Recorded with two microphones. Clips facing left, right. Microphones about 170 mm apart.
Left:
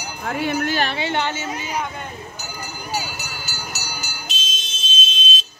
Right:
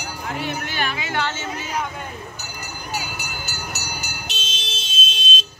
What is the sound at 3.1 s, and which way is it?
Vehicle, 60° right (ahead or behind).